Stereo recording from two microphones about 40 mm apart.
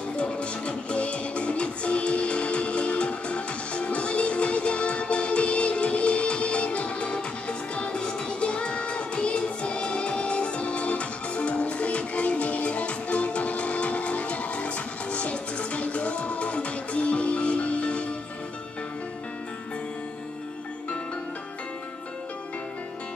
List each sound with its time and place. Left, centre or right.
0.1 s music: left